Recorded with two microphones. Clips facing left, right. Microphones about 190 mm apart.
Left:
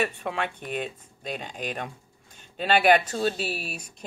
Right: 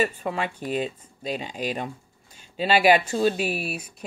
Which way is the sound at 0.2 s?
5° right (ahead or behind).